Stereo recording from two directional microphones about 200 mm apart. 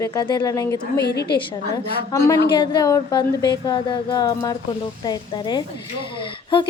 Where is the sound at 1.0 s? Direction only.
55° left (ahead or behind).